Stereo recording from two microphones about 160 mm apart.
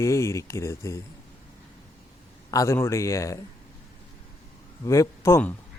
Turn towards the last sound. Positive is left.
turn(degrees=15)  # may be behind; listen again after turning